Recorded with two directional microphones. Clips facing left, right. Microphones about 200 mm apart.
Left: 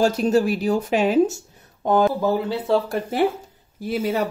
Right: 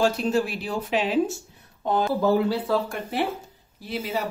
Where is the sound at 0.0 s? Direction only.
40° left (ahead or behind).